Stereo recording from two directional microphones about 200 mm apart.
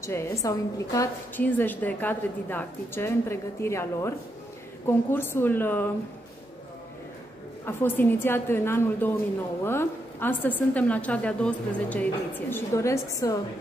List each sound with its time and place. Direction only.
0.0 s a woman's voice: 15° left (ahead or behind)
7.6 s a woman's voice: 10° left (ahead or behind)